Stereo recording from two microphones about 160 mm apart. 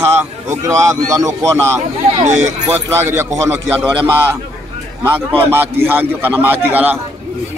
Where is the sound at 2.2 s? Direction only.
45° right (ahead or behind).